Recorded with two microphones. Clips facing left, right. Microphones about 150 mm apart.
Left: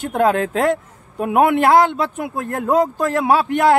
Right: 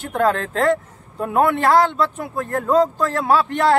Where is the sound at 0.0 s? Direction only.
15° left (ahead or behind).